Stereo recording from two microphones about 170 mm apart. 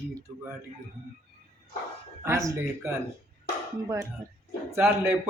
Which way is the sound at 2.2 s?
20° right (ahead or behind).